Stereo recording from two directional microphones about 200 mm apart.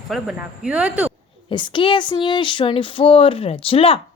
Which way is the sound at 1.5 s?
25° left (ahead or behind).